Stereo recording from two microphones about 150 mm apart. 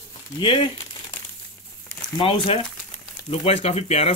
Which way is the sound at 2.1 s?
35° left (ahead or behind).